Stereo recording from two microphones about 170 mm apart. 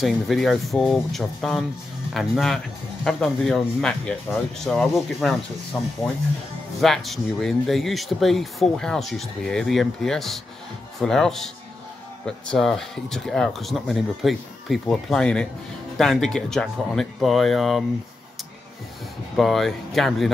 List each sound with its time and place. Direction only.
0.0 s speech: centre (ahead or behind)
6.8 s speech: centre (ahead or behind)
19.3 s speech: centre (ahead or behind)